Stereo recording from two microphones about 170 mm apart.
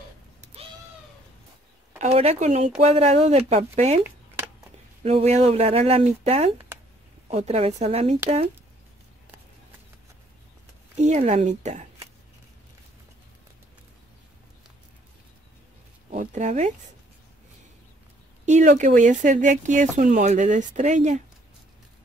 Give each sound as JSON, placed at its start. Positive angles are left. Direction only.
{"t": 2.0, "sound": "speech", "side_deg": -40}
{"t": 5.0, "sound": "speech", "side_deg": -40}
{"t": 11.0, "sound": "speech", "side_deg": -40}
{"t": 16.1, "sound": "speech", "side_deg": -45}
{"t": 18.4, "sound": "speech", "side_deg": -45}